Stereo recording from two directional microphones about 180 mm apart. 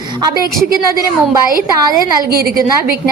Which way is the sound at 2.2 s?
55° right (ahead or behind).